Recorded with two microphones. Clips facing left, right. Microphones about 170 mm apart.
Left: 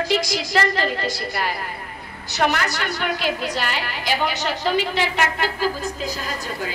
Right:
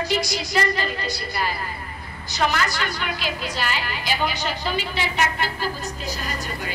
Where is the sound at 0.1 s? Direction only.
90° left.